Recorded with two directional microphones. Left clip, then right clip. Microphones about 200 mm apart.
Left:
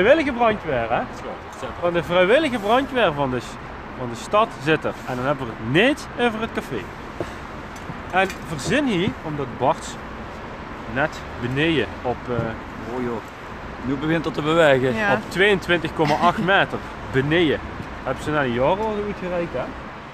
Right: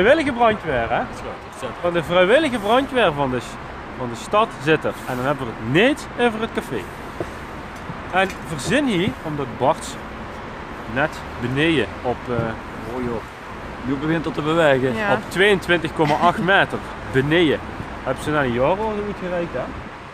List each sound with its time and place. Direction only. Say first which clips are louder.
0.0 s speech: right 1 dB; centre (ahead or behind)
8.1 s speech: right 1 dB; 5° right (ahead or behind)
11.0 s speech: right 1 dB; 5° right (ahead or behind)
14.0 s speech: even; 30° left (ahead or behind)
15.0 s speech: even; 20° left (ahead or behind)
15.3 s speech: right 3 dB; 5° right (ahead or behind)